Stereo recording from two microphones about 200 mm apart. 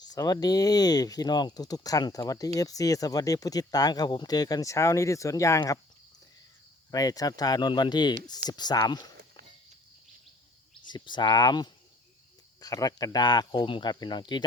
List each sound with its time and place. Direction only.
0.0 s speech: 20° left (ahead or behind)
6.9 s speech: 20° left (ahead or behind)
10.8 s speech: 20° left (ahead or behind)